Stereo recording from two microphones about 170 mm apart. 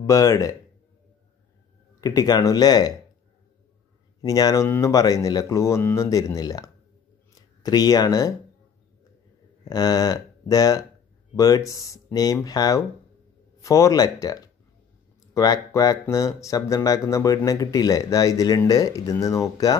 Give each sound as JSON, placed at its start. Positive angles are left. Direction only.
{"t": 0.0, "sound": "speech", "side_deg": 20}
{"t": 2.0, "sound": "speech", "side_deg": 20}
{"t": 4.2, "sound": "speech", "side_deg": 20}
{"t": 9.7, "sound": "speech", "side_deg": 20}